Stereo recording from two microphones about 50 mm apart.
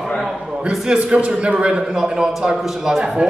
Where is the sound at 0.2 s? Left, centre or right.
Centre.